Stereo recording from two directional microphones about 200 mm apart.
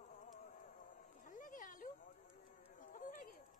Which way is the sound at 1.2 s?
40° left (ahead or behind).